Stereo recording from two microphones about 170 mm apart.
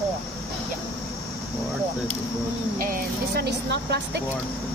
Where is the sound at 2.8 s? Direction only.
60° right (ahead or behind); by 4.2 s 75° right (ahead or behind).